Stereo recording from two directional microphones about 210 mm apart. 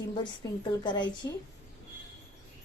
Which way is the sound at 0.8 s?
20° left (ahead or behind).